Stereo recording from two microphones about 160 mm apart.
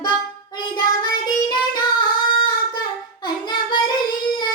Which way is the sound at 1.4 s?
30° left (ahead or behind).